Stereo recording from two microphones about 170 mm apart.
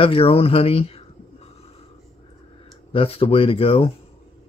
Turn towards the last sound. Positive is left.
turn(degrees=35)  # may be behind; listen again after turning